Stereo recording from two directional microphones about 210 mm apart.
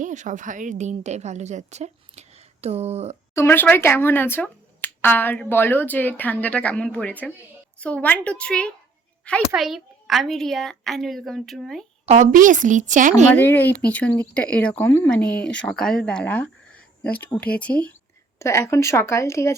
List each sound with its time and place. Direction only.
0.0 s a woman's voice: 35° right (ahead or behind)
3.3 s a child's voice: 10° left (ahead or behind)
12.0 s a woman's voice: 35° right (ahead or behind)
13.3 s a child's voice: 10° left (ahead or behind)